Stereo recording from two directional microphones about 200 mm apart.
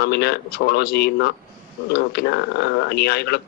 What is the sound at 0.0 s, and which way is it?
Speech, 55° left (ahead or behind).